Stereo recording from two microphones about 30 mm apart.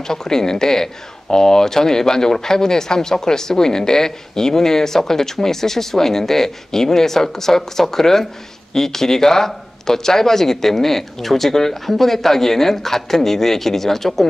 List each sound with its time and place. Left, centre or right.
0.0 s a woman's voice: centre